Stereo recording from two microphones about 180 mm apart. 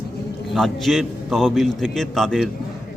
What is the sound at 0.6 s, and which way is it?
A man's voice, centre (ahead or behind).